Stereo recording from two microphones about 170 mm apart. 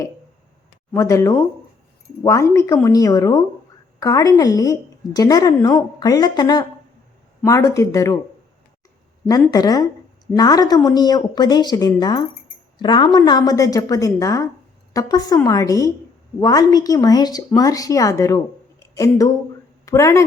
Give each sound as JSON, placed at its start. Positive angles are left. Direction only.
{"t": 0.9, "sound": "speech", "side_deg": 20}
{"t": 9.5, "sound": "a woman's voice", "side_deg": 20}